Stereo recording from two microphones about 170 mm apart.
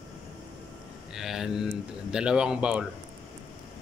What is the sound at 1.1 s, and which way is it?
Mantra, centre (ahead or behind).